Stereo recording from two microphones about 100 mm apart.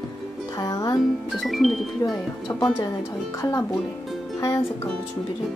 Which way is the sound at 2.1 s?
35° left (ahead or behind).